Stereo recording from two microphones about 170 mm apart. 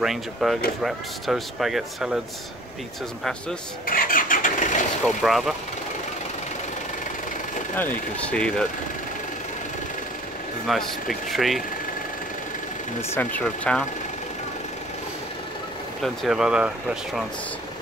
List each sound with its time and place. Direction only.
0.0 s speech: centre (ahead or behind)
3.8 s vehicle: 55° left (ahead or behind)
5.0 s speech: centre (ahead or behind)
7.7 s speech: 10° left (ahead or behind)
10.7 s speech: centre (ahead or behind)
13.1 s speech: 10° left (ahead or behind)
16.0 s speech: centre (ahead or behind)